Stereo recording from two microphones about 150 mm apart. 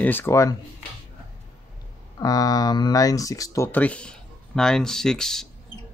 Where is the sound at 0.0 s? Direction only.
15° left (ahead or behind).